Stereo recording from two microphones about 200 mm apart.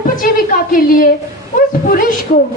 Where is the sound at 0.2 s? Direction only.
45° left (ahead or behind).